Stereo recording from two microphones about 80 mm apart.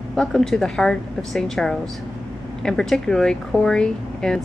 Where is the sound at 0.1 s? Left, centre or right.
Centre.